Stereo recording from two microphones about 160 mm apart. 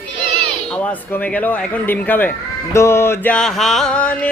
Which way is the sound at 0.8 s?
10° left (ahead or behind).